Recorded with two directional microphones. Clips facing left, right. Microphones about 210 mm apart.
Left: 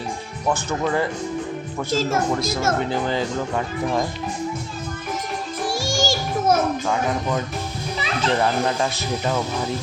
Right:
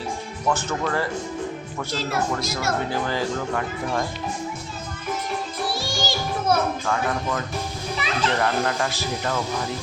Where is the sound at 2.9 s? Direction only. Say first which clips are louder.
Left 2 dB; 20° left (ahead or behind).